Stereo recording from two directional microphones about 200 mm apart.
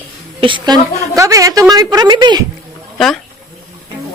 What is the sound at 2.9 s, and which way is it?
Speech, centre (ahead or behind).